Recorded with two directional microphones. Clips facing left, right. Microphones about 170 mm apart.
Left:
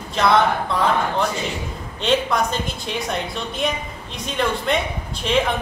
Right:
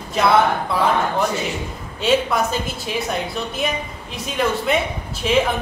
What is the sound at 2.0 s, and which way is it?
A woman's voice, 5° right (ahead or behind).